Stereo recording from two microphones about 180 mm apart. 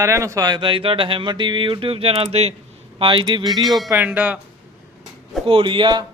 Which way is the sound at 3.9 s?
10° right (ahead or behind).